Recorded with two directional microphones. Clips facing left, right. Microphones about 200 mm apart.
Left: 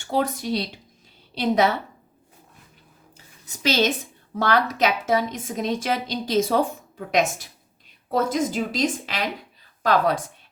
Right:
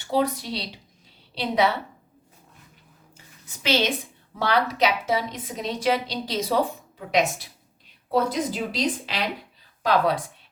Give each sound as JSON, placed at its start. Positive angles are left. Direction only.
{"t": 0.0, "sound": "a woman's voice", "side_deg": 45}
{"t": 3.6, "sound": "a woman's voice", "side_deg": 40}